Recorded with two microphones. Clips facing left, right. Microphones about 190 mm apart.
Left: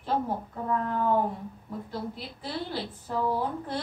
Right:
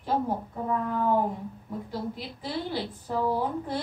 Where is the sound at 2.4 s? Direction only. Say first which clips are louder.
Right 2 dB; 10° right (ahead or behind).